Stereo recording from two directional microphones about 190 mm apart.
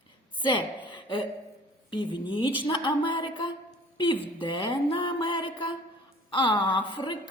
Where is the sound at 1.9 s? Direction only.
25° left (ahead or behind).